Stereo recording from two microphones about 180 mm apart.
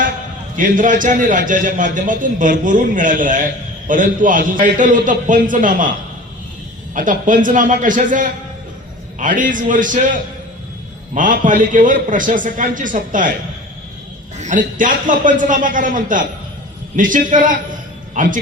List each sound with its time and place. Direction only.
0.5 s a man's voice: 45° right (ahead or behind)
6.9 s a man's voice: 45° right (ahead or behind)
14.3 s a man's voice: 45° right (ahead or behind)